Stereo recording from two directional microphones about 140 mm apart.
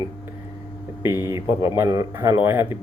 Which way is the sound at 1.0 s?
20° right (ahead or behind).